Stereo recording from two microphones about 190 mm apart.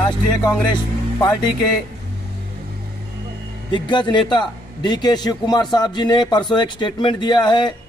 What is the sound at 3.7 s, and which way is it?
A man's voice, 25° left (ahead or behind).